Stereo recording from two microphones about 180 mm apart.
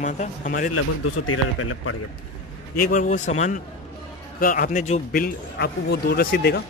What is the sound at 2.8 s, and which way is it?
A man's voice, 45° left (ahead or behind).